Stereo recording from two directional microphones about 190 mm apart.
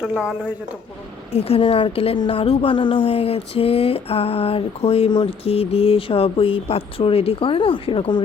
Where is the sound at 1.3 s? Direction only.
30° left (ahead or behind).